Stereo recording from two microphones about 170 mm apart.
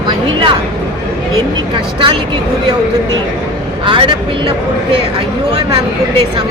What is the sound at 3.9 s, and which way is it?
Speech, 30° right (ahead or behind).